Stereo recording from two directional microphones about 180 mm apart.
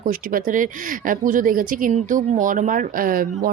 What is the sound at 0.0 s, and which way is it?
Speech, 50° right (ahead or behind).